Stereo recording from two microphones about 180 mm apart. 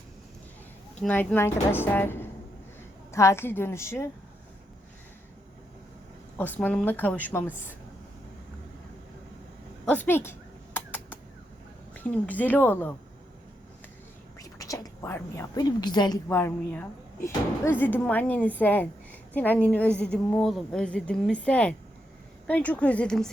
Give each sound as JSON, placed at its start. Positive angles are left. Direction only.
{"t": 0.9, "sound": "a woman's voice", "side_deg": 10}
{"t": 6.3, "sound": "a woman's voice", "side_deg": 10}
{"t": 9.8, "sound": "a woman's voice", "side_deg": 10}
{"t": 10.8, "sound": "bird", "side_deg": 10}
{"t": 11.9, "sound": "a woman's voice", "side_deg": 10}
{"t": 14.3, "sound": "a woman's voice", "side_deg": 20}
{"t": 16.3, "sound": "a woman's voice", "side_deg": 10}